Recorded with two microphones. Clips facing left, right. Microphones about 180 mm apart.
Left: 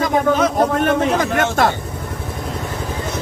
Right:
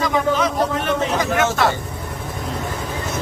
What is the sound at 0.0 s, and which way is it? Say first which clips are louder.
A man's voice: left 3 dB; 50° left (ahead or behind).